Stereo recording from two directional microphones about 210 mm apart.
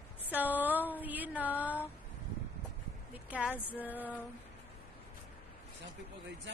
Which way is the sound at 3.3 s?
5° right (ahead or behind).